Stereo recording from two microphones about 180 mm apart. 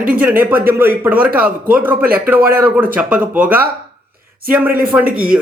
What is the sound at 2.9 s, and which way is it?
Speech, 10° right (ahead or behind).